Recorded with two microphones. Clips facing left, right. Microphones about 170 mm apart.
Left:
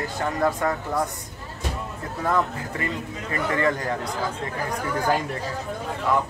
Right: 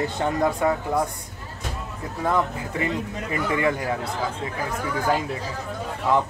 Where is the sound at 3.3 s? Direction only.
10° right (ahead or behind).